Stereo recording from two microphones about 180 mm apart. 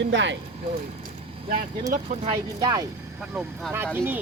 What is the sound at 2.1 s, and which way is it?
Speech, 30° right (ahead or behind).